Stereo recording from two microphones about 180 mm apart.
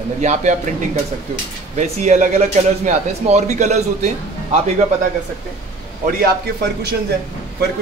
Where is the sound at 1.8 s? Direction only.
40° right (ahead or behind).